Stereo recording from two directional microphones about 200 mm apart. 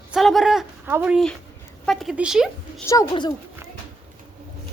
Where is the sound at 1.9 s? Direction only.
Centre (ahead or behind).